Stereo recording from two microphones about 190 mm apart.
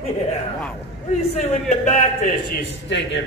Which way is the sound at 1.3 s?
40° left (ahead or behind).